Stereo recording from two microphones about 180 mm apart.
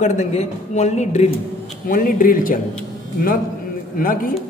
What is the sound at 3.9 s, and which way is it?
Speech, 50° left (ahead or behind).